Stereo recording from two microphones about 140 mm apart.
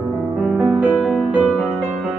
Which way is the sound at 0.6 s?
10° right (ahead or behind).